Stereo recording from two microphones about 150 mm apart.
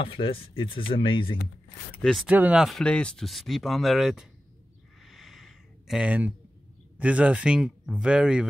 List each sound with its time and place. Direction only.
0.0 s speech: 35° left (ahead or behind)
2.0 s speech: 5° left (ahead or behind)
2.2 s speech: 10° right (ahead or behind)
5.0 s a sound: centre (ahead or behind)
7.0 s speech: 10° right (ahead or behind)